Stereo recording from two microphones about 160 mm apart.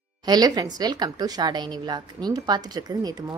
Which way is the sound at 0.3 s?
25° right (ahead or behind).